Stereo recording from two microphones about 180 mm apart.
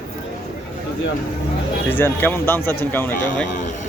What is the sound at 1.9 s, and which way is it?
Speech, 10° left (ahead or behind).